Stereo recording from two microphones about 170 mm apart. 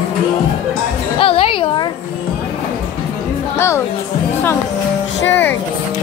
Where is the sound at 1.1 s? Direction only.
30° left (ahead or behind).